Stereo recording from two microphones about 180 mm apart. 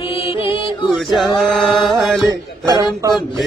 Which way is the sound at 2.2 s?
20° right (ahead or behind).